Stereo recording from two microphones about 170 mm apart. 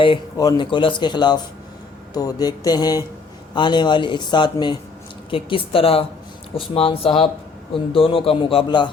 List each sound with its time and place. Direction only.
0.0 s a man's voice: 25° left (ahead or behind)